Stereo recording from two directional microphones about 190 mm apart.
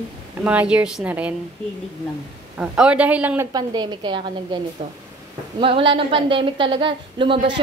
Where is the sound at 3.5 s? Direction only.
25° right (ahead or behind).